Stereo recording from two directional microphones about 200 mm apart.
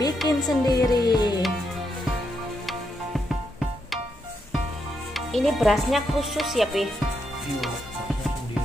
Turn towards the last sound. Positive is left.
turn(degrees=0)  # may be behind; listen again after turning